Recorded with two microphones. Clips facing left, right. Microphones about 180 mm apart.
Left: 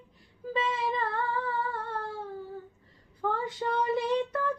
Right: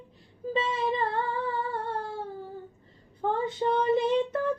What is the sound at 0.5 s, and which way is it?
Music, 25° right (ahead or behind).